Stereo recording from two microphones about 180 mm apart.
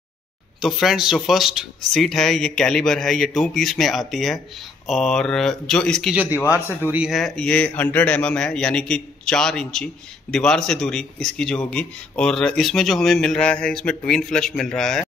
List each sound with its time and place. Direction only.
0.6 s a man's voice: centre (ahead or behind)
6.3 s a man's voice: 15° left (ahead or behind)
6.9 s a man's voice: 5° right (ahead or behind)